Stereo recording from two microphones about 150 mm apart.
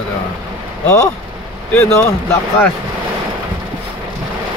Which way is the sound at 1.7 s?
15° left (ahead or behind).